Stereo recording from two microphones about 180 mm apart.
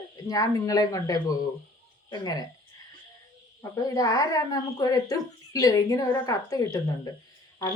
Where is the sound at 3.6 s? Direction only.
20° left (ahead or behind).